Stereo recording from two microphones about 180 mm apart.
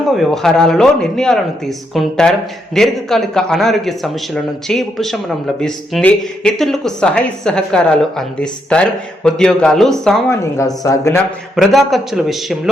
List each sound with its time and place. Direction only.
0.1 s speech: centre (ahead or behind)
10.2 s speech: 15° left (ahead or behind)
11.5 s speech: centre (ahead or behind)